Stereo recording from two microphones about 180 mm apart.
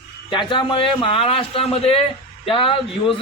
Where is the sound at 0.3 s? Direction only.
25° left (ahead or behind).